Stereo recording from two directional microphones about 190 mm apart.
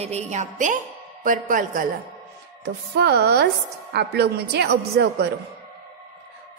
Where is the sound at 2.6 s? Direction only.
60° right (ahead or behind).